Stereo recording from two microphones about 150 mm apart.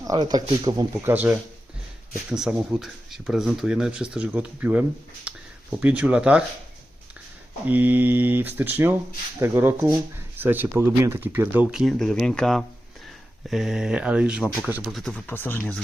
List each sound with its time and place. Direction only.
0.0 s speech: 25° right (ahead or behind)
1.1 s speech: 10° right (ahead or behind)
7.7 s speech: 10° right (ahead or behind)
15.3 s speech: 15° left (ahead or behind)